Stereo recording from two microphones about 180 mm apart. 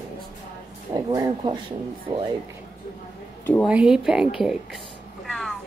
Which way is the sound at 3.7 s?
5° right (ahead or behind).